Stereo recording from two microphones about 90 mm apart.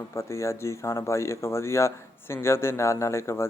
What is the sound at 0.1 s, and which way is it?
Speech, 35° left (ahead or behind).